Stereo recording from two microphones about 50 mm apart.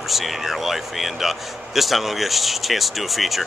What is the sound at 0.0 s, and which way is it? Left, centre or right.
Speech, centre.